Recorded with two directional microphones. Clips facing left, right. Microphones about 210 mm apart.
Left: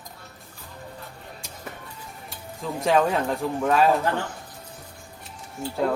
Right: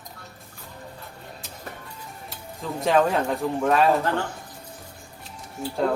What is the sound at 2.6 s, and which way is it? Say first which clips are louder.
Speech: right 1 dB; centre (ahead or behind).